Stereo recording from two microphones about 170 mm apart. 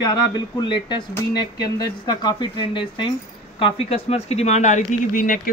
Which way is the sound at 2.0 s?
25° left (ahead or behind).